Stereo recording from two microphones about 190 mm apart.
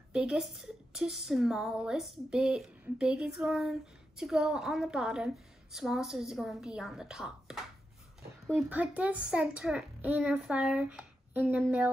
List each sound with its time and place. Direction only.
0.1 s a woman's voice: 5° right (ahead or behind)